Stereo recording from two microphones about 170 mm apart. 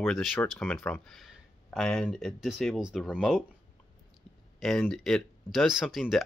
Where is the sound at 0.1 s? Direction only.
Centre (ahead or behind).